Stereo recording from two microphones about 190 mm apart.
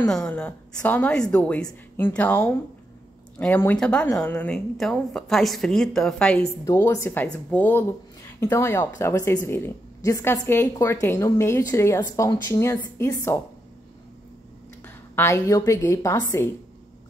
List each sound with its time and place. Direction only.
0.1 s a woman's voice: 5° left (ahead or behind)
15.1 s speech: 15° left (ahead or behind)